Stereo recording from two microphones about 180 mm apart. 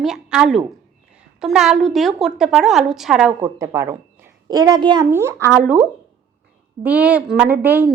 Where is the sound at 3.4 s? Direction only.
15° right (ahead or behind).